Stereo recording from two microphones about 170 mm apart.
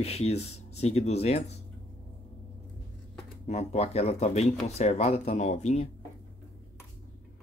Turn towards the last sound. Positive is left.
turn(degrees=40)  # may be behind; listen again after turning